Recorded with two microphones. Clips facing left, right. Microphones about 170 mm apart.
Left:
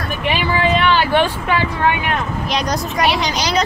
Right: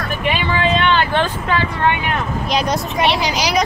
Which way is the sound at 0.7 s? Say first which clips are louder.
Left 3 dB; 5° left (ahead or behind).